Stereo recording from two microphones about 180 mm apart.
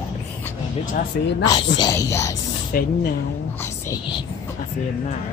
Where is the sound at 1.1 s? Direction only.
55° left (ahead or behind).